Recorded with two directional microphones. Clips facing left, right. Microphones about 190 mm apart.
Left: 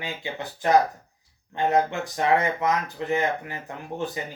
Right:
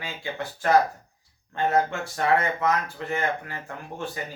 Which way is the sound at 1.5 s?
15° left (ahead or behind).